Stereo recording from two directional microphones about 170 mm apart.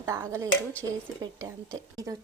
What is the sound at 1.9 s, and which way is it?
Speech, 20° right (ahead or behind).